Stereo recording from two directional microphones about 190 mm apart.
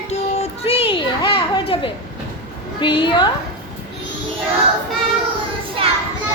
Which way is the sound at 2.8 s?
25° left (ahead or behind).